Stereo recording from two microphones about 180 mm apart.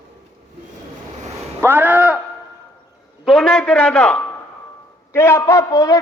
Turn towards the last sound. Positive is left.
turn(degrees=20)  # may be behind; listen again after turning